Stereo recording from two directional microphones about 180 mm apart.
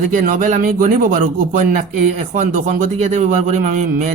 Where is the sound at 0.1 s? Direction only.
45° right (ahead or behind).